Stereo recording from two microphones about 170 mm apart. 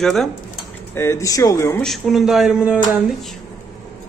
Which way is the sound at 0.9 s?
15° left (ahead or behind).